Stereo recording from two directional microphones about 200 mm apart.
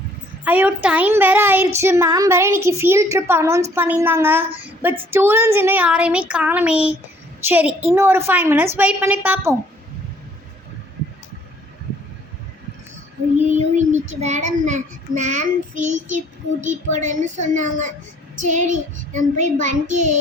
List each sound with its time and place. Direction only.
0.4 s a woman's voice: 10° right (ahead or behind)
13.5 s child singing: 35° right (ahead or behind)